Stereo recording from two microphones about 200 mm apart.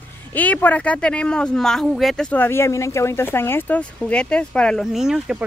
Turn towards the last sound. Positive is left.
turn(degrees=-5)  # may be behind; listen again after turning